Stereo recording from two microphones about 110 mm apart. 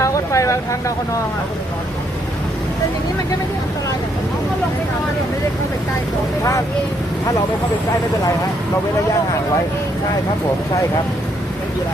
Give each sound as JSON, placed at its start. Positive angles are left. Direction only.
{"t": 0.0, "sound": "vehicle", "side_deg": 30}